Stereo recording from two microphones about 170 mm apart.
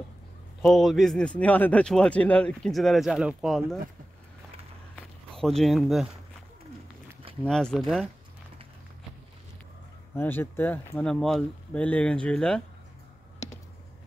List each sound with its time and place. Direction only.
0.6 s speech: centre (ahead or behind)
4.9 s walk: centre (ahead or behind)
7.4 s speech: 5° left (ahead or behind)
10.1 s speech: 15° left (ahead or behind)
13.4 s a sound: 20° left (ahead or behind)